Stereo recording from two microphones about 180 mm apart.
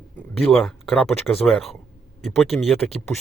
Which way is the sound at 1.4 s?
Centre (ahead or behind).